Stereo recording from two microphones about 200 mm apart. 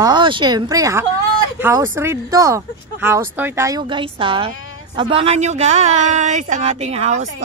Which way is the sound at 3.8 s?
25° right (ahead or behind).